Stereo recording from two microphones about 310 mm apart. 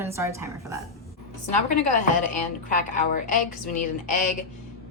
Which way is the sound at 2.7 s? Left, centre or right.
Left.